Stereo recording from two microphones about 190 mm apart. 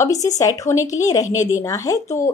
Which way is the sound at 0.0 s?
15° left (ahead or behind).